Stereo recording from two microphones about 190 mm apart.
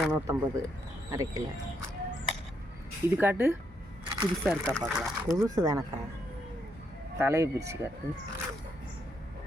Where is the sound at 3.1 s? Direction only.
10° right (ahead or behind).